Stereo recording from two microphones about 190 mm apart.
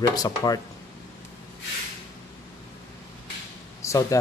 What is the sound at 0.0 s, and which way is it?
Speech, 20° left (ahead or behind).